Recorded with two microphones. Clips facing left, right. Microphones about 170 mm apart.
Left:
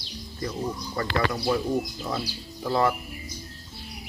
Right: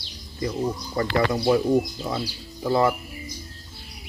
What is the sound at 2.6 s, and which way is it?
Speech, 10° right (ahead or behind).